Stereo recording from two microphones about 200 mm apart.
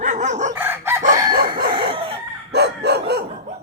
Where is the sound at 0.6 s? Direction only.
10° right (ahead or behind).